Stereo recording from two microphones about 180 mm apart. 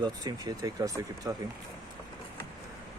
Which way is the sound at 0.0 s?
20° right (ahead or behind).